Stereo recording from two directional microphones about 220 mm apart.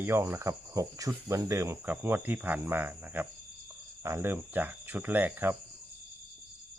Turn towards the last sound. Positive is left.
turn(degrees=-10)  # may be behind; listen again after turning